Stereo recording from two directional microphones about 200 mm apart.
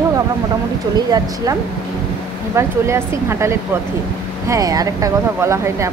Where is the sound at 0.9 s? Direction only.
20° right (ahead or behind).